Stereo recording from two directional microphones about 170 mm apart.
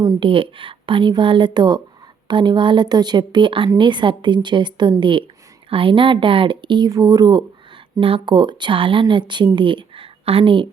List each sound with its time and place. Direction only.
0.0 s a woman's voice: 25° right (ahead or behind)